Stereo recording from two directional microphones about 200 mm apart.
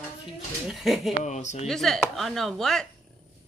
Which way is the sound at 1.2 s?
35° left (ahead or behind).